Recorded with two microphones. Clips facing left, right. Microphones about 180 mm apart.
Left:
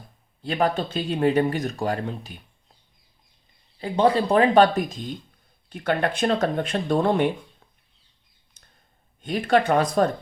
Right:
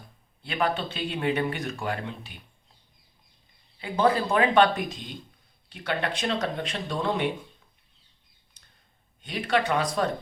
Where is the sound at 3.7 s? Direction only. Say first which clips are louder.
Left 3 dB; 35° left (ahead or behind); by 7.2 s 50° left (ahead or behind).